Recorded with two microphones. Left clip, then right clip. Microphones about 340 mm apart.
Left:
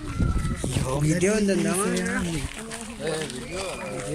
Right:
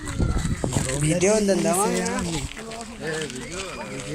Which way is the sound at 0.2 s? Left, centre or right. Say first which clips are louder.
Right 1 dB; right.